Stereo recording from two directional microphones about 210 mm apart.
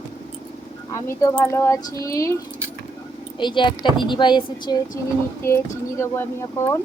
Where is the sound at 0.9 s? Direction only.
15° left (ahead or behind).